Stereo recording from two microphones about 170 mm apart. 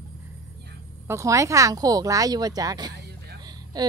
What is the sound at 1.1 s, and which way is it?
Speech, 20° right (ahead or behind).